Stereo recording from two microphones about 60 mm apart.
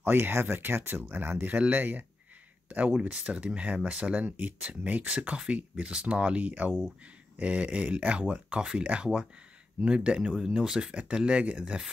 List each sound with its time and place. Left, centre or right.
0.0 s speech: right; by 11.9 s centre